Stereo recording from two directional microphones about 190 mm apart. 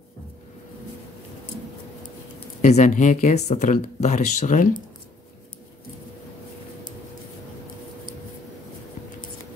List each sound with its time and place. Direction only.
2.6 s speech: 40° left (ahead or behind)